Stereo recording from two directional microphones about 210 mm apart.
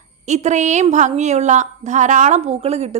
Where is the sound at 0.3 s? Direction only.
35° right (ahead or behind).